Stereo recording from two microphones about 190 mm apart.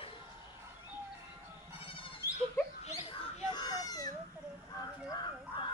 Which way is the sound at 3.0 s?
30° left (ahead or behind).